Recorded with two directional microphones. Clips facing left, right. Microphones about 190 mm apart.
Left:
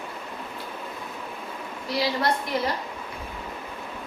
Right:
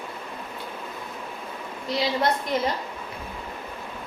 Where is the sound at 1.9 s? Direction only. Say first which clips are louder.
Right 1 dB; 20° right (ahead or behind).